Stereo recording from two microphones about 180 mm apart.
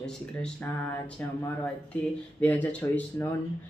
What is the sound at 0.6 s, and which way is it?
Speech, 10° left (ahead or behind).